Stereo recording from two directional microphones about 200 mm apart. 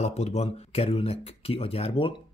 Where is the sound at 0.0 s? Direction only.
35° left (ahead or behind).